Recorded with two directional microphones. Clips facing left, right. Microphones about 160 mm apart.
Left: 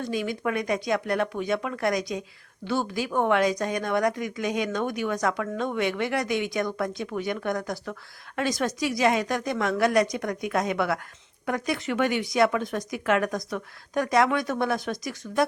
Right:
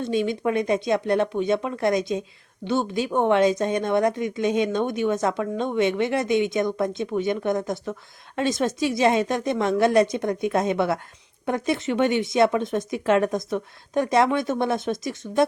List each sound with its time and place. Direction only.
0.0 s a woman's voice: 25° right (ahead or behind)